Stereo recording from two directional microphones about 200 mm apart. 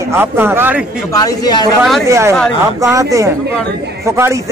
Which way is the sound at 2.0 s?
15° right (ahead or behind).